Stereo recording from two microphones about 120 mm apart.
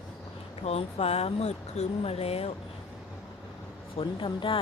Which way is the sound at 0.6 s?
60° left (ahead or behind).